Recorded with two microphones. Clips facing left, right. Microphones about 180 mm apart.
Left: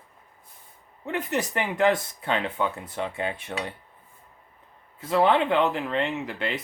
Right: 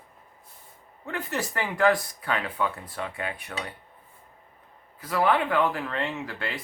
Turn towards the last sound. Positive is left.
turn(degrees=20)  # may be behind; listen again after turning